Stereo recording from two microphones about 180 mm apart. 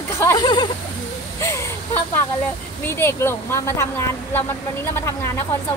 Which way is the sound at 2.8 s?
15° left (ahead or behind).